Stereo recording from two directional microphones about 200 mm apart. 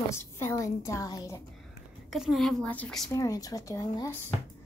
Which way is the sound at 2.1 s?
Centre (ahead or behind).